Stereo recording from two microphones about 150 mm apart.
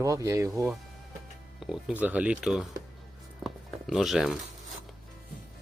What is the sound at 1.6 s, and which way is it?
Speech, 5° right (ahead or behind).